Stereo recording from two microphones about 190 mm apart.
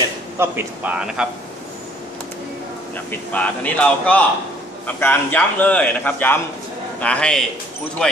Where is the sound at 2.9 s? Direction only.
10° left (ahead or behind).